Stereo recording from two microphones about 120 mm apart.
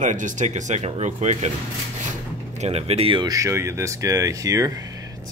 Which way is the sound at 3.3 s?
25° right (ahead or behind).